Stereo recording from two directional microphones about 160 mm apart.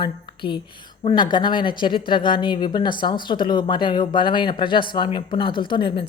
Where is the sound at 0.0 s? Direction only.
30° left (ahead or behind).